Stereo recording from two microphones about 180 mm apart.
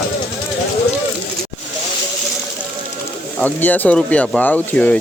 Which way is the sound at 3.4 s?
10° left (ahead or behind).